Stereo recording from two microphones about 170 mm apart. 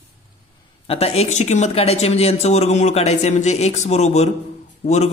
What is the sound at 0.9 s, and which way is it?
A man's voice, 35° left (ahead or behind).